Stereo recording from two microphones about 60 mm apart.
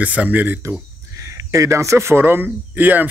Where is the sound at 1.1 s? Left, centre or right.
Right.